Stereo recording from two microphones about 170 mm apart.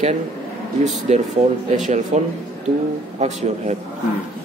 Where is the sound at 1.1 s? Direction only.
40° right (ahead or behind).